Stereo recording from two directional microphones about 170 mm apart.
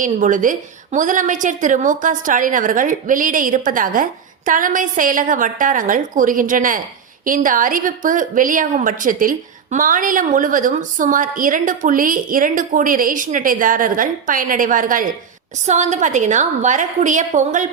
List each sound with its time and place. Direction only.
0.0 s a woman's voice: 50° right (ahead or behind)